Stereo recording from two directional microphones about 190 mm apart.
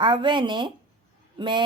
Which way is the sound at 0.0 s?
25° right (ahead or behind).